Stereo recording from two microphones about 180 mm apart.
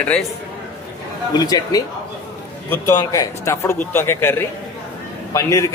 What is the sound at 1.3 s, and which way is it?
A man's voice, 20° left (ahead or behind).